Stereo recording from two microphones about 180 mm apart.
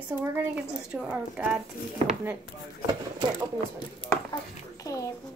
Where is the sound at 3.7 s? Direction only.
25° left (ahead or behind).